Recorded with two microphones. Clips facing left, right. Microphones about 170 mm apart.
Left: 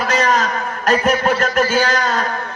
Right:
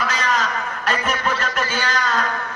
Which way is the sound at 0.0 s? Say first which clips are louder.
Left 5 dB; 40° left (ahead or behind).